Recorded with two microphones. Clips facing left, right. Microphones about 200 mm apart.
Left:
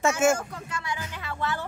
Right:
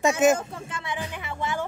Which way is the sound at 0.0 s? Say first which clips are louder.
Right 2 dB; 20° right (ahead or behind).